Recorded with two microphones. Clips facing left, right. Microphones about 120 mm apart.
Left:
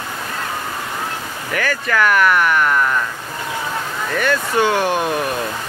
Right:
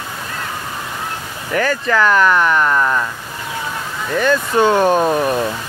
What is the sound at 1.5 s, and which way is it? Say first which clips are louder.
Speech: right 4 dB; 20° right (ahead or behind).